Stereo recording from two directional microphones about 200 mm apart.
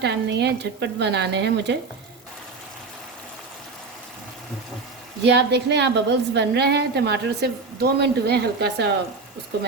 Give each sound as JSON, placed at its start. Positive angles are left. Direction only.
{"t": 0.0, "sound": "a woman's voice", "side_deg": -60}
{"t": 5.2, "sound": "a woman's voice", "side_deg": -60}